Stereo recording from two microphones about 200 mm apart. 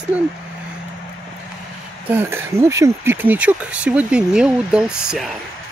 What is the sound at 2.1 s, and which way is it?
Speech, 10° right (ahead or behind).